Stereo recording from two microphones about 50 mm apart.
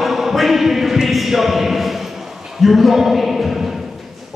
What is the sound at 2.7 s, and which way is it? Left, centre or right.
Speech, centre.